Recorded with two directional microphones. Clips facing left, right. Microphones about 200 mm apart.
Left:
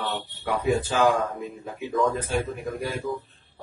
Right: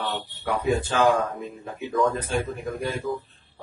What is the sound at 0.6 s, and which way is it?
Speech, 10° left (ahead or behind).